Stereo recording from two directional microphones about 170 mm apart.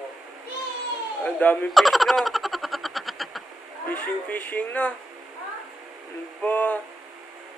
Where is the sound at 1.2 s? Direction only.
10° left (ahead or behind).